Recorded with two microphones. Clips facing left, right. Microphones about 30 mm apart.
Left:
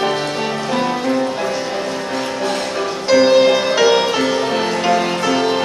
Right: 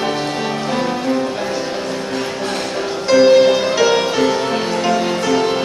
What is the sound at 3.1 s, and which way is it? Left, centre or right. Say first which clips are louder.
Music: right 1 dB; centre.